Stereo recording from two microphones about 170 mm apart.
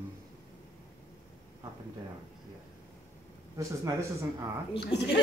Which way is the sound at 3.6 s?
20° right (ahead or behind).